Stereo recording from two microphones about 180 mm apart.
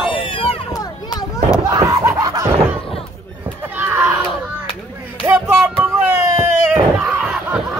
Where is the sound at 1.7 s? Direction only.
15° right (ahead or behind).